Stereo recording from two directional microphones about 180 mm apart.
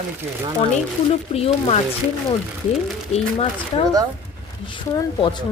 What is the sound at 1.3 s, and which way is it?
Speech, 35° left (ahead or behind).